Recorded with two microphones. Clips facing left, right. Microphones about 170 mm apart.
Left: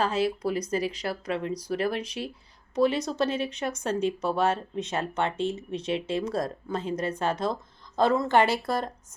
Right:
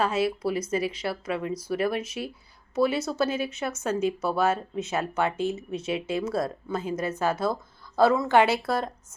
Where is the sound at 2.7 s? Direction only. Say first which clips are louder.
Even; 5° right (ahead or behind).